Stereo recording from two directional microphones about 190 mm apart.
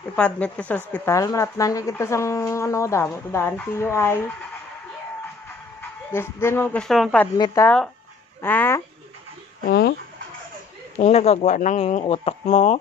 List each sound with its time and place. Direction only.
0.1 s a woman's voice: 5° left (ahead or behind)
5.8 s speech: 10° left (ahead or behind)
7.3 s speech: 20° left (ahead or behind)
7.6 s a woman's voice: 5° left (ahead or behind)
9.6 s speech: 55° left (ahead or behind)
11.0 s speech: 35° left (ahead or behind)